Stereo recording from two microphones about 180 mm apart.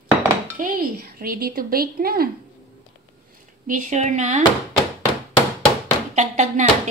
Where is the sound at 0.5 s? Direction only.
55° right (ahead or behind).